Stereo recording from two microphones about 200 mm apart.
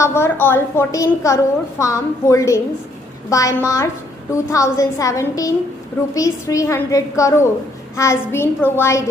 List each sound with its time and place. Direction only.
0.0 s a woman's voice: 10° left (ahead or behind)